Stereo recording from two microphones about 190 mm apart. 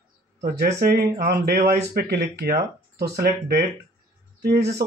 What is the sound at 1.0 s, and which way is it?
Speech, 55° right (ahead or behind).